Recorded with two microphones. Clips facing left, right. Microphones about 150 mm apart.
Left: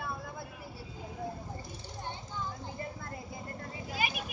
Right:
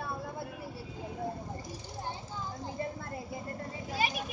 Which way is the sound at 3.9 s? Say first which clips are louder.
Right 3 dB; 30° right (ahead or behind).